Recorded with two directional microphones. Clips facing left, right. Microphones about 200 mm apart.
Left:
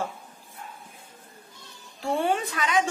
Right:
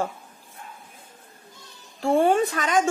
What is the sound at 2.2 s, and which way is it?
Speech, 45° right (ahead or behind).